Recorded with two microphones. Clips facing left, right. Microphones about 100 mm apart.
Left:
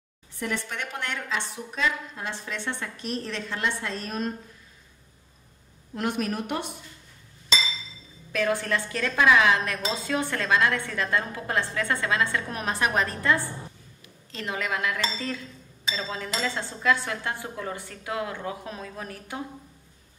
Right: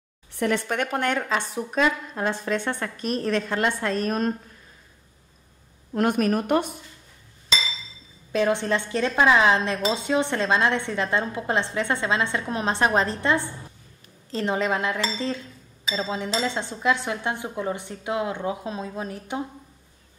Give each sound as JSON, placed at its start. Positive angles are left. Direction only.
{"t": 0.4, "sound": "a woman's voice", "side_deg": -60}
{"t": 5.9, "sound": "a woman's voice", "side_deg": -50}
{"t": 8.3, "sound": "a woman's voice", "side_deg": -25}